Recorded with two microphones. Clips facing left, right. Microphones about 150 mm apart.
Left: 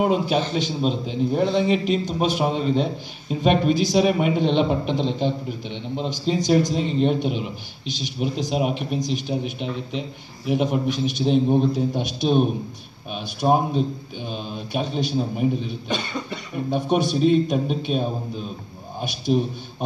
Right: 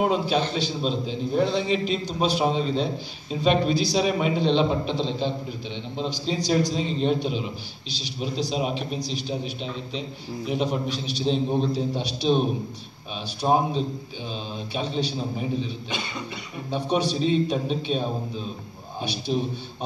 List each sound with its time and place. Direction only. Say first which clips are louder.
0.0 s a man's voice: left 2 dB; 50° left (ahead or behind)
16.7 s a man's voice: left 3 dB; 50° left (ahead or behind)